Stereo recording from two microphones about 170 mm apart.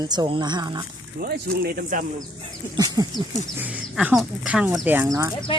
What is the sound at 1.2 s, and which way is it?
Speech, 60° right (ahead or behind).